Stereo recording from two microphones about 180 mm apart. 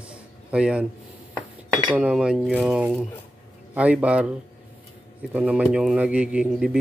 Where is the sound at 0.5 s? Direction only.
5° right (ahead or behind).